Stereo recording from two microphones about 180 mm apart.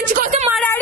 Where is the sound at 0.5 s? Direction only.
10° left (ahead or behind).